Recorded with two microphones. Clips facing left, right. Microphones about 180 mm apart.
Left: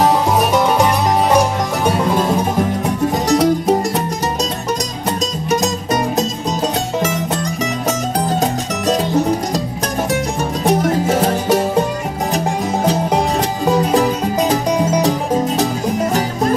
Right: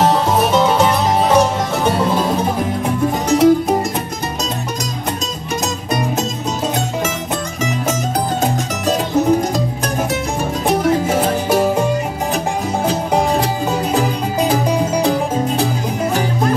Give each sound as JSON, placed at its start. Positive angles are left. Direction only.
{"t": 0.0, "sound": "music", "side_deg": 15}
{"t": 3.3, "sound": "music", "side_deg": 35}
{"t": 10.6, "sound": "music", "side_deg": 40}